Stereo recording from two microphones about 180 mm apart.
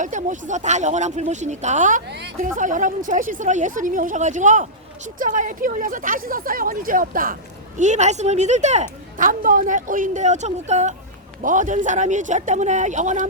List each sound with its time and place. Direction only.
0.0 s a woman's voice: 45° right (ahead or behind)
2.0 s a woman's voice: 70° right (ahead or behind)
2.6 s a woman's voice: 45° right (ahead or behind)